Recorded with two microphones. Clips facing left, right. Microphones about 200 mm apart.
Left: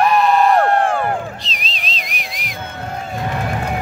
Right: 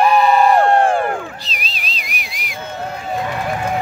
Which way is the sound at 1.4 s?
Centre (ahead or behind).